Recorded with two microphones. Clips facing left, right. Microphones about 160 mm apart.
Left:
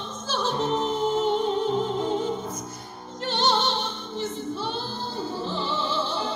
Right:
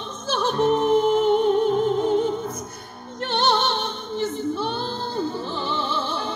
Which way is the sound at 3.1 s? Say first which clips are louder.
Right 3 dB; 55° right (ahead or behind).